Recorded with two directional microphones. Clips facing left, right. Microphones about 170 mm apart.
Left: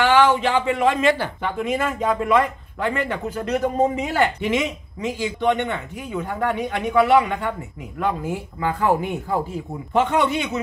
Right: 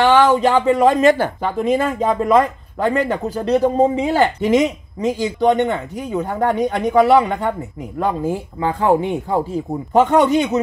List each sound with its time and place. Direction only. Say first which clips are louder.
0.2 s speech: right 4 dB; 40° right (ahead or behind)
9.9 s speech: right 6 dB; 40° right (ahead or behind)